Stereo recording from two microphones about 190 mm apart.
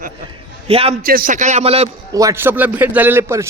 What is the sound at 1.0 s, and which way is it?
Speech, 50° right (ahead or behind).